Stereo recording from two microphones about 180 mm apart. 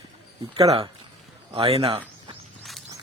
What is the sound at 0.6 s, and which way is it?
Speech, 35° right (ahead or behind).